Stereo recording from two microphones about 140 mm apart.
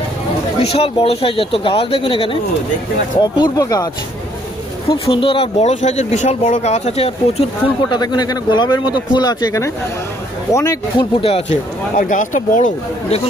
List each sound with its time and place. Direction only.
0.6 s speech: 45° left (ahead or behind); by 3.9 s 25° left (ahead or behind)
4.8 s speech: 40° left (ahead or behind)
5.6 s speech: 55° left (ahead or behind)
7.9 s speech: 30° left (ahead or behind)
11.0 s speech: 40° left (ahead or behind)
12.0 s speech: 65° left (ahead or behind)